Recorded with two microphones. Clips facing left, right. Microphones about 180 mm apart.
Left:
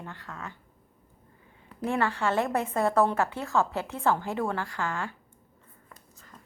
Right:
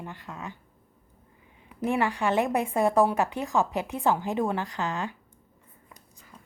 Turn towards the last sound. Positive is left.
turn(degrees=-10)  # may be behind; listen again after turning